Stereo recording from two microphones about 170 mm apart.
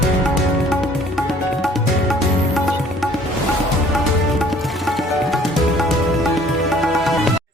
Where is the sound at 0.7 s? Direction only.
Centre (ahead or behind).